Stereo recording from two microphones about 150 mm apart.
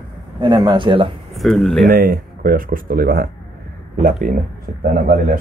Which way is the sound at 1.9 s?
75° right (ahead or behind).